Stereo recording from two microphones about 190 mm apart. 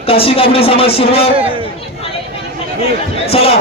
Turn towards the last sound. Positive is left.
turn(degrees=30)  # may be behind; listen again after turning